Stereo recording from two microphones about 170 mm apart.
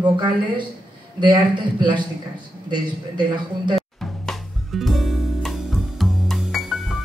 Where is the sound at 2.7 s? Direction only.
25° right (ahead or behind).